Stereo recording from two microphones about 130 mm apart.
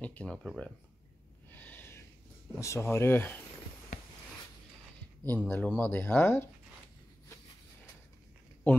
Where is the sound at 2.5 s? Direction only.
25° left (ahead or behind).